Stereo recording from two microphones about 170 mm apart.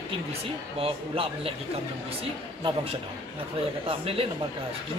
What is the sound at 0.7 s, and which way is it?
Speech, 35° right (ahead or behind).